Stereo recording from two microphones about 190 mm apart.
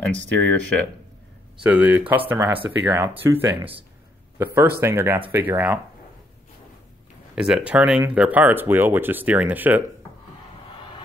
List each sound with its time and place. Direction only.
0.0 s speech: 5° left (ahead or behind)
1.6 s speech: 10° right (ahead or behind)
7.3 s speech: 5° right (ahead or behind)